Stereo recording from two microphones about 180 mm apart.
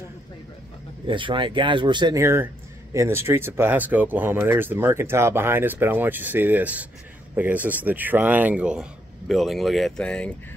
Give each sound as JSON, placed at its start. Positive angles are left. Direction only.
{"t": 1.0, "sound": "speech", "side_deg": -25}
{"t": 2.2, "sound": "speech", "side_deg": -15}